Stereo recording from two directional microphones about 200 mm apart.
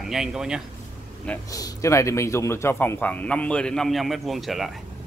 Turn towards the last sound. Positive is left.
turn(degrees=0)  # may be behind; listen again after turning